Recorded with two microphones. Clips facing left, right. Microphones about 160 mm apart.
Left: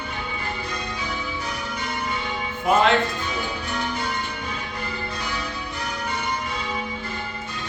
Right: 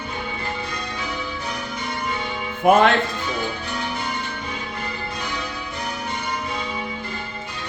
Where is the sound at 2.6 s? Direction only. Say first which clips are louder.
Right 5 dB; 55° right (ahead or behind).